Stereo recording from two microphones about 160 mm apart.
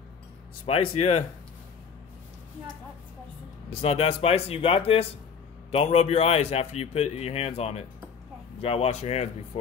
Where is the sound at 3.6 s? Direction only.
35° left (ahead or behind).